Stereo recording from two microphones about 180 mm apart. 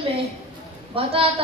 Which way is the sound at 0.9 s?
30° right (ahead or behind).